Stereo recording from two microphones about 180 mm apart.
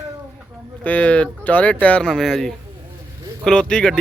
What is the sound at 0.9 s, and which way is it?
Speech, 10° left (ahead or behind).